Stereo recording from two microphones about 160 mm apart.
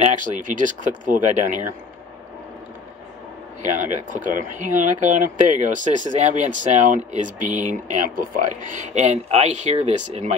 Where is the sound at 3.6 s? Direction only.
50° right (ahead or behind).